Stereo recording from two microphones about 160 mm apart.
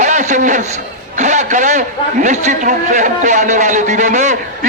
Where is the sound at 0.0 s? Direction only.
50° right (ahead or behind).